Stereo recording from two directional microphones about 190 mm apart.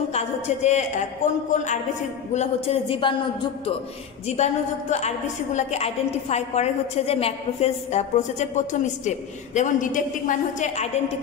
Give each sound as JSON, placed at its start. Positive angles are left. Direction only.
{"t": 0.1, "sound": "a woman's voice", "side_deg": 35}
{"t": 4.3, "sound": "a woman's voice", "side_deg": 35}